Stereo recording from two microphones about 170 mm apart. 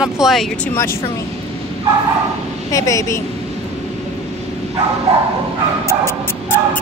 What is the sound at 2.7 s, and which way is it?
Speech, 20° left (ahead or behind).